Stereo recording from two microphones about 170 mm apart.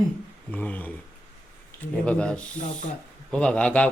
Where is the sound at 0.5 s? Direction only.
10° left (ahead or behind).